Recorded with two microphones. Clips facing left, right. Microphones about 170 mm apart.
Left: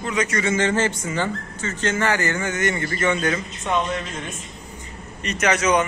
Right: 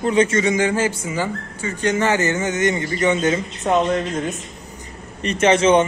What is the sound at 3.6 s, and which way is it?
A man's voice, 40° right (ahead or behind).